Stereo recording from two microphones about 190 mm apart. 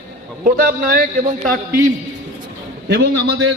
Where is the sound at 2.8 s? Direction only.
60° right (ahead or behind).